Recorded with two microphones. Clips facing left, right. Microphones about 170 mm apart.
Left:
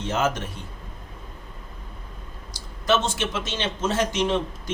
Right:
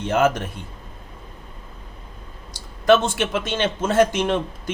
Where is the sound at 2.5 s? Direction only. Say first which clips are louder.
Right 7 dB; 55° right (ahead or behind).